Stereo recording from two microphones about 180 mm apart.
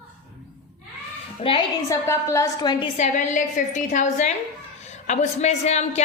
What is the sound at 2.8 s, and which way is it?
A woman's voice, 40° left (ahead or behind).